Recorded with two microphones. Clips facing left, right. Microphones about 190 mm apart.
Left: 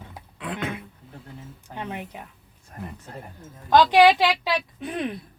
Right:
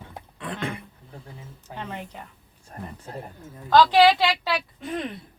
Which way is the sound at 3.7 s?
15° left (ahead or behind).